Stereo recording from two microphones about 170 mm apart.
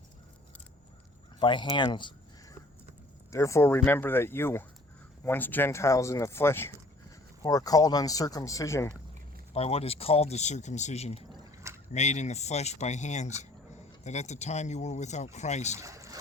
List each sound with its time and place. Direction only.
1.4 s speech: 30° left (ahead or behind)
3.3 s speech: 20° left (ahead or behind)
9.5 s speech: 35° left (ahead or behind)
11.3 s a sound: 20° right (ahead or behind)
11.9 s speech: 45° left (ahead or behind)
15.8 s boat: 20° right (ahead or behind)